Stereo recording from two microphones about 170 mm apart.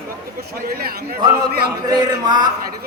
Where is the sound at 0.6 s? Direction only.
60° right (ahead or behind).